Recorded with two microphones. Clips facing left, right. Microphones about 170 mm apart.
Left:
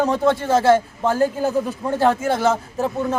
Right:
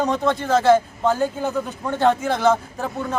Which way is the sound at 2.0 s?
5° left (ahead or behind).